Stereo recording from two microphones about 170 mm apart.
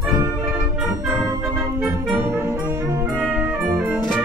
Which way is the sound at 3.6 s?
15° right (ahead or behind).